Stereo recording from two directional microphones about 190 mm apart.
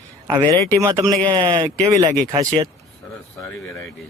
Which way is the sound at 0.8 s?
15° right (ahead or behind).